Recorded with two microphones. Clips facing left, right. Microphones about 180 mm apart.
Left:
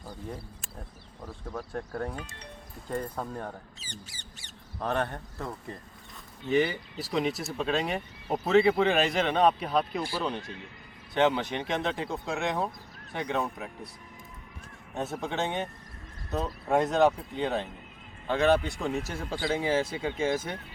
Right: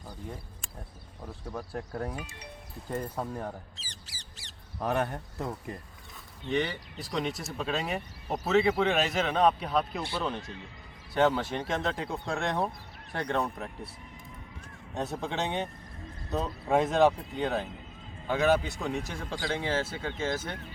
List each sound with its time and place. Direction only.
1.5 s speech: 10° right (ahead or behind)
3.8 s squawk: 90° right
4.8 s speech: 10° right (ahead or behind)
6.4 s speech: 5° left (ahead or behind)
14.9 s speech: centre (ahead or behind)